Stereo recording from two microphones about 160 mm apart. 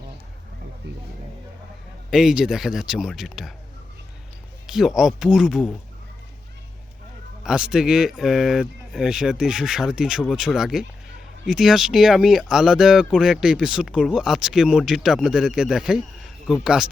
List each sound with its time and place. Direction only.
0.8 s speech: 90° right
2.0 s speech: 5° right (ahead or behind)
4.6 s speech: centre (ahead or behind)
7.4 s speech: 5° right (ahead or behind)